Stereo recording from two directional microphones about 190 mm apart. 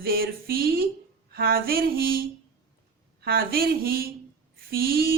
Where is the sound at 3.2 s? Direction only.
50° right (ahead or behind).